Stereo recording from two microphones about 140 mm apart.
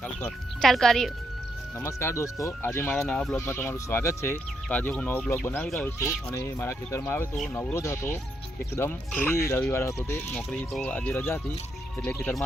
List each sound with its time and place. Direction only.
0.2 s a woman's voice: 5° left (ahead or behind)
1.8 s speech: 20° left (ahead or behind)
3.0 s a woman's voice: 5° left (ahead or behind)
3.3 s speech: 15° left (ahead or behind)
5.8 s speech: 20° left (ahead or behind)
10.3 s speech: 5° left (ahead or behind)